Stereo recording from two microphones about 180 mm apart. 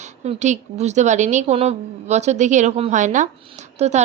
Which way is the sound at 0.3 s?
40° right (ahead or behind).